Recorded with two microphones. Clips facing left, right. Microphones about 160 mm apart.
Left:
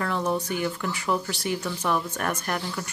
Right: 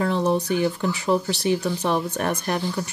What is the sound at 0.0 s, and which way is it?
Speech, 20° right (ahead or behind).